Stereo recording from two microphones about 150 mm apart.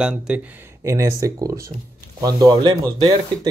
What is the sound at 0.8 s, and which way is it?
Speech, 20° right (ahead or behind).